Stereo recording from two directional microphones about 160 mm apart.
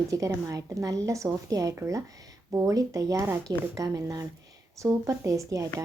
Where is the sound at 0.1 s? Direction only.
20° right (ahead or behind).